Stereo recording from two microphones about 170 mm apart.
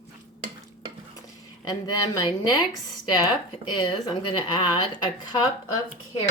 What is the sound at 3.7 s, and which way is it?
A woman's voice, 25° left (ahead or behind).